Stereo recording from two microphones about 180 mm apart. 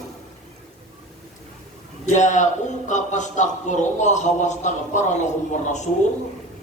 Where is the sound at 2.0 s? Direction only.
40° left (ahead or behind).